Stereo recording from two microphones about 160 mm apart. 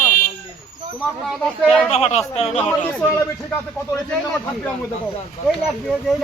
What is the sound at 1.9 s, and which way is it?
Speech, 45° left (ahead or behind).